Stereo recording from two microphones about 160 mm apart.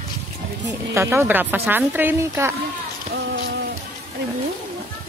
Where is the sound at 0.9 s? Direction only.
15° right (ahead or behind).